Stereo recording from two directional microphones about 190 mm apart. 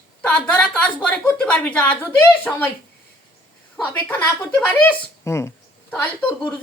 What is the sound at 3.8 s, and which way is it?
A woman's voice, 5° left (ahead or behind).